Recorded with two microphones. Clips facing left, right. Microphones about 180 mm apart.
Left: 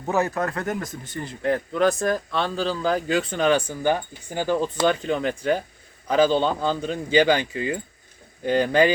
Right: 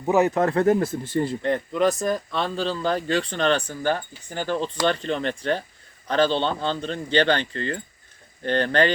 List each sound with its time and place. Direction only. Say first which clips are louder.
0.1 s speech: right 4 dB; 20° right (ahead or behind)
1.4 s speech: left 1 dB; 5° left (ahead or behind)